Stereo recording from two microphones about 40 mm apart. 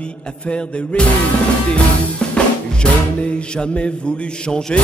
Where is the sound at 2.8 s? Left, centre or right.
Left.